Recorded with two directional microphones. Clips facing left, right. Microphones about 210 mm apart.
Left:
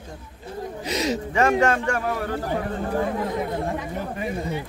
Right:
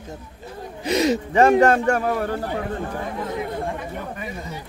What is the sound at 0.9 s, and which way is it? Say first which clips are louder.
Speech: right 6 dB; 55° right (ahead or behind).